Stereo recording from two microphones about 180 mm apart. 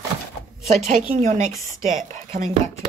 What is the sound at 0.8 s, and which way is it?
Speech, 40° right (ahead or behind).